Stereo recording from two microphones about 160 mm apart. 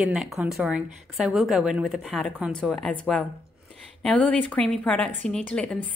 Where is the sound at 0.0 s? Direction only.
Centre (ahead or behind).